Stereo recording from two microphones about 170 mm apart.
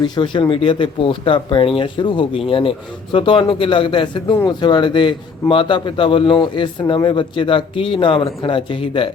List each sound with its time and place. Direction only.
0.0 s a man's voice: 30° left (ahead or behind)